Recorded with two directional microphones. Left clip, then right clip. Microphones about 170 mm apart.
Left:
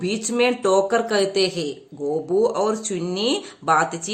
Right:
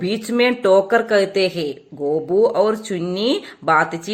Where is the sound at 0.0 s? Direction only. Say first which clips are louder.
Right 3 dB; 20° right (ahead or behind).